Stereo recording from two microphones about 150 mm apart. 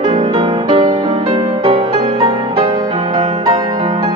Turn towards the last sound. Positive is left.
turn(degrees=-25)  # may be behind; listen again after turning